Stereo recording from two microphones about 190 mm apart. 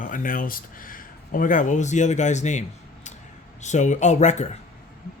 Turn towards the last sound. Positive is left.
turn(degrees=35)  # may be behind; listen again after turning